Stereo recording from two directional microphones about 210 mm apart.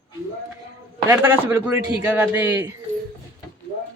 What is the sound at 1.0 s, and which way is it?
Speech, 10° right (ahead or behind).